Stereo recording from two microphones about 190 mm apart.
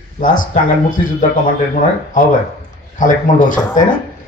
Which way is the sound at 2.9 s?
45° left (ahead or behind).